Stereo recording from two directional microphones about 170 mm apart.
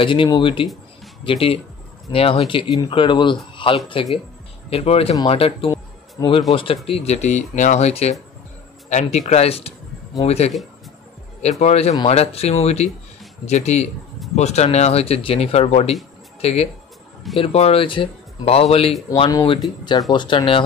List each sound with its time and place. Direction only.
0.0 s a man's voice: 30° left (ahead or behind)
11.6 s speech: 40° left (ahead or behind)